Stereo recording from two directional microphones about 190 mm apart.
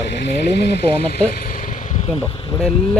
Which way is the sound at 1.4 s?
50° left (ahead or behind).